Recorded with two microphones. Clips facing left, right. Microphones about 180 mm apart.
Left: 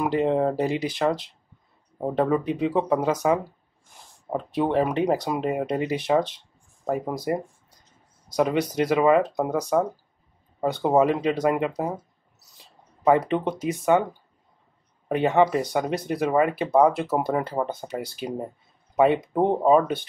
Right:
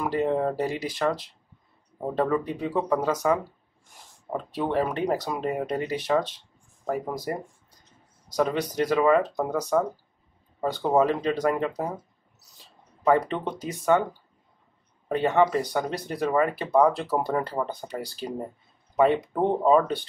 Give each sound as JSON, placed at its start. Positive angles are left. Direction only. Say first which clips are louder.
{"t": 0.0, "sound": "speech", "louder": "left 3 dB", "side_deg": 20}
{"t": 7.3, "sound": "speech", "louder": "left 5 dB", "side_deg": 15}
{"t": 13.0, "sound": "speech", "louder": "left 2 dB", "side_deg": 15}
{"t": 15.0, "sound": "speech", "louder": "left 2 dB", "side_deg": 15}